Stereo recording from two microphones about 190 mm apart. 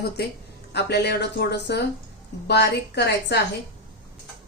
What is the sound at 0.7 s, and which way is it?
Speech, 60° left (ahead or behind).